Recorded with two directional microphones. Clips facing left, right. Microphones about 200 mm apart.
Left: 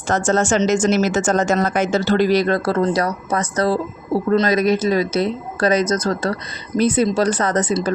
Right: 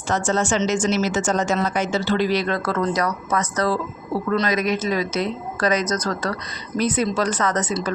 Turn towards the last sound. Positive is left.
turn(degrees=30)  # may be behind; listen again after turning